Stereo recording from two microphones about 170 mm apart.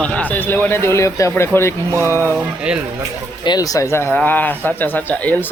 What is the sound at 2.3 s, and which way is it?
Speech, 5° right (ahead or behind).